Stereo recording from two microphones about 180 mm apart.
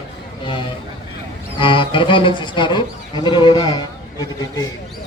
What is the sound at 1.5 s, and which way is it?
Speech, 30° left (ahead or behind).